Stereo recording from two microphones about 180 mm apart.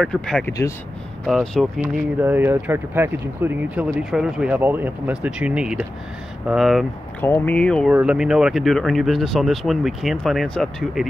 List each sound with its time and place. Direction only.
0.0 s speech: 5° left (ahead or behind)
0.5 s speech: 20° left (ahead or behind)
1.2 s speech: centre (ahead or behind)
1.8 s speech: 10° right (ahead or behind)
7.2 s speech: 10° left (ahead or behind)
7.9 s speech: 5° right (ahead or behind)